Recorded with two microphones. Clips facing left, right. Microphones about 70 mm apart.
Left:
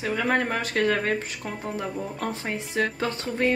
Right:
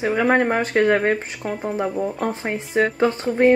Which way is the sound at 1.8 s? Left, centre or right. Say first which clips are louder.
Right 9 dB; right.